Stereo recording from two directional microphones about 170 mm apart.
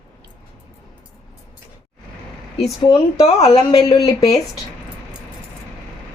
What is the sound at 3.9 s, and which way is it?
Speech, 20° left (ahead or behind).